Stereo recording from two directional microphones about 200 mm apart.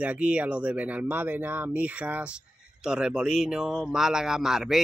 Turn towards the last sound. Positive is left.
turn(degrees=0)  # may be behind; listen again after turning